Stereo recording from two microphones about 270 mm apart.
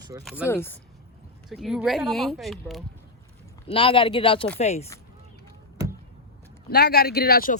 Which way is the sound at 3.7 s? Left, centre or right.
Centre.